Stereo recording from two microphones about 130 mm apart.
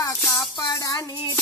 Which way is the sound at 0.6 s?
35° left (ahead or behind).